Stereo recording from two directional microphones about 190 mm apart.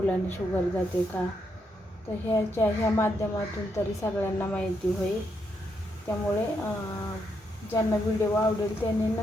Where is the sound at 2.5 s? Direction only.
10° left (ahead or behind).